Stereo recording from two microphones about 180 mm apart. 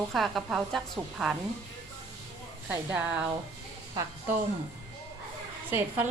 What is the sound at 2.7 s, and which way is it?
Speech, 10° right (ahead or behind).